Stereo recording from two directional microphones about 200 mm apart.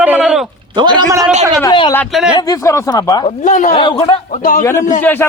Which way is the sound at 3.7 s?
25° left (ahead or behind).